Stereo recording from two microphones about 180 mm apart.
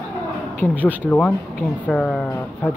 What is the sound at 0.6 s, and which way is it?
Speech, 10° left (ahead or behind).